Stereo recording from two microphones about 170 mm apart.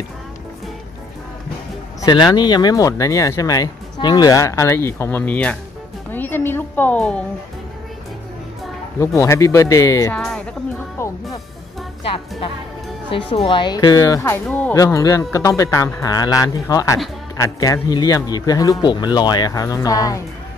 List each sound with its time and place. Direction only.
2.0 s music: 25° left (ahead or behind)
2.3 s speech: 25° left (ahead or behind); by 5.6 s 10° left (ahead or behind)
6.1 s a sound: 10° left (ahead or behind)
9.0 s speech: 15° left (ahead or behind)
10.1 s speech: 5° left (ahead or behind)
11.0 s music: 15° left (ahead or behind)
12.0 s speech: 30° left (ahead or behind)
14.4 s speech: 5° left (ahead or behind)
14.7 s speech: 20° left (ahead or behind)